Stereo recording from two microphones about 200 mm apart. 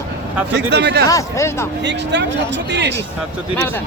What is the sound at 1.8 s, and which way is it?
Speech, 60° right (ahead or behind).